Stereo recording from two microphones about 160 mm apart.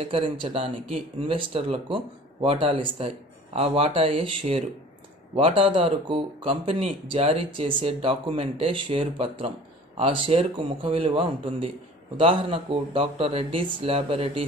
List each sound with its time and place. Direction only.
0.0 s speech: 35° right (ahead or behind)